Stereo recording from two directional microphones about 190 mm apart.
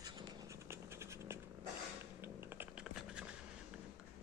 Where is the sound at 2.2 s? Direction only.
10° right (ahead or behind).